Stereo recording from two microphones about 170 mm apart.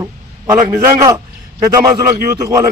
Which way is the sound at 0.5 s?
15° right (ahead or behind).